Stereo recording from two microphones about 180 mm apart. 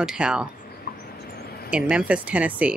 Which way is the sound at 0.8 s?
60° left (ahead or behind).